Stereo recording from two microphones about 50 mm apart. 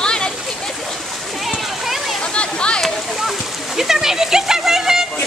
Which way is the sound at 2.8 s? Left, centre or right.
Centre.